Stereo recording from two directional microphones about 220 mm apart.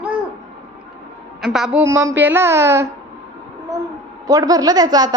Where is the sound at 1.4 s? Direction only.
Centre (ahead or behind).